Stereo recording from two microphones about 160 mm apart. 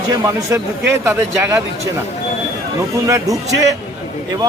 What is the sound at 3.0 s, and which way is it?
Speech, 20° right (ahead or behind).